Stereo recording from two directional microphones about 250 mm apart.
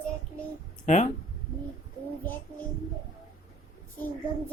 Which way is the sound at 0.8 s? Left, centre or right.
Left.